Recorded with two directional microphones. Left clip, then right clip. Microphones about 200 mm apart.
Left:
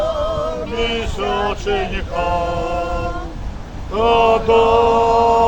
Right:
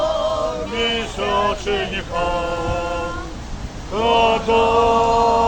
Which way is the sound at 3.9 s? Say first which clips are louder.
Left 2 dB; 45° left (ahead or behind).